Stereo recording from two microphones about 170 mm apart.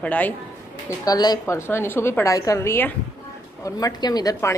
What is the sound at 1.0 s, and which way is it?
A woman's voice, 20° left (ahead or behind).